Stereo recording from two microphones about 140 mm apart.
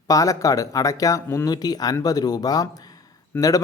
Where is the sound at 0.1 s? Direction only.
25° left (ahead or behind).